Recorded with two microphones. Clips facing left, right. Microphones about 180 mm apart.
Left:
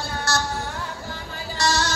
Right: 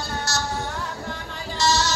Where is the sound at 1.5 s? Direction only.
55° left (ahead or behind).